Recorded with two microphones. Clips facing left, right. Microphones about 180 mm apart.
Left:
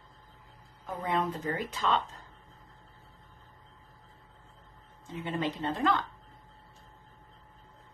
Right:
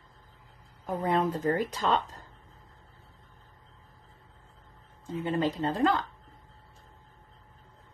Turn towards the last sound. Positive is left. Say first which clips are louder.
# right 3 dB
turn(degrees=-35)  # may be behind; listen again after turning